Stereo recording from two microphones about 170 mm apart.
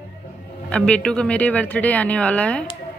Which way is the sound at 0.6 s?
5° left (ahead or behind).